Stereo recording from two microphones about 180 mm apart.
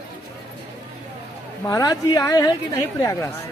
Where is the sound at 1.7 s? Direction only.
20° left (ahead or behind).